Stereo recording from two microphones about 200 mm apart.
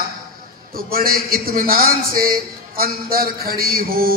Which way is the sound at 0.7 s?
50° right (ahead or behind).